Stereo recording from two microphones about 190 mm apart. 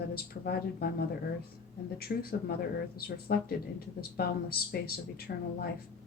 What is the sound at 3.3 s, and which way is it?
Speech, 50° left (ahead or behind).